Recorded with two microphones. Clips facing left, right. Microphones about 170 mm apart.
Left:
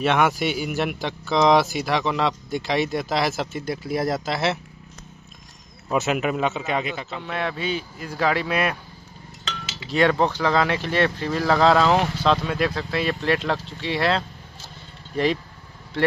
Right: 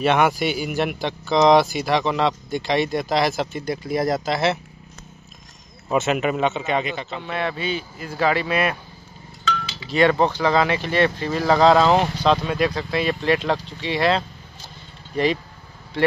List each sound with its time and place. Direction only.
0.0 s speech: centre (ahead or behind)
5.9 s speech: centre (ahead or behind)
9.9 s speech: 5° right (ahead or behind)
11.5 s speech: 15° right (ahead or behind)
12.2 s speech: 5° right (ahead or behind)